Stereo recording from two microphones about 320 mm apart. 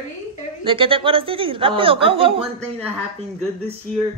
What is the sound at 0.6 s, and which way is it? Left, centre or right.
A woman's voice, centre.